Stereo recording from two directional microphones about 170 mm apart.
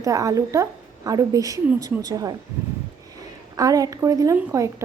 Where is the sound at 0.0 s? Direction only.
20° right (ahead or behind).